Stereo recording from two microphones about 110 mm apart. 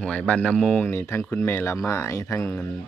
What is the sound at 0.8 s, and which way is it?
Speech, 20° left (ahead or behind).